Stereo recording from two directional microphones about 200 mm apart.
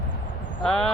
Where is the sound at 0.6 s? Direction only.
5° left (ahead or behind).